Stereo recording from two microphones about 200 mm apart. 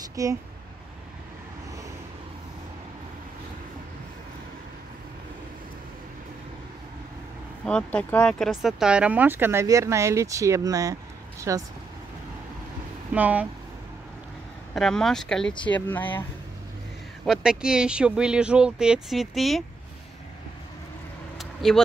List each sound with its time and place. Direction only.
0.1 s speech: 15° right (ahead or behind)
7.6 s speech: 5° left (ahead or behind); by 11.6 s 15° right (ahead or behind)
13.1 s speech: 10° right (ahead or behind)
14.7 s speech: 5° left (ahead or behind)
17.2 s speech: 5° right (ahead or behind)
21.4 s vehicle: centre (ahead or behind)